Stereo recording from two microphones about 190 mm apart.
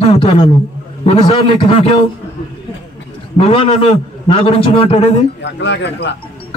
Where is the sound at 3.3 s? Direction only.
30° left (ahead or behind).